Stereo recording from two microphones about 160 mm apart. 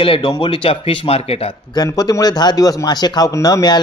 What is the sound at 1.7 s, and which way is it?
Speech, 25° left (ahead or behind).